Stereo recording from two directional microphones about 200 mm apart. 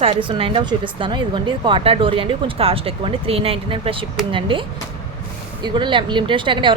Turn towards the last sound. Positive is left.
turn(degrees=-25)  # may be behind; listen again after turning